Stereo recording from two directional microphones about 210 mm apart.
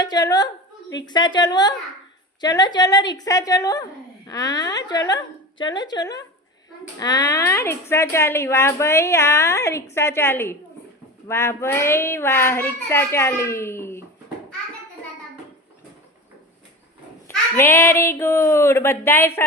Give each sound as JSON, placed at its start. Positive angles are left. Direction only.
{"t": 0.0, "sound": "a sound", "side_deg": 20}
{"t": 1.0, "sound": "a woman's voice", "side_deg": 20}
{"t": 17.2, "sound": "a woman's voice", "side_deg": 10}